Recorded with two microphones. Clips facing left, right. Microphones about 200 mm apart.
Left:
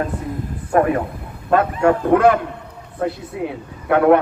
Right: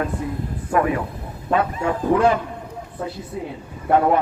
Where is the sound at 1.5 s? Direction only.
55° left (ahead or behind).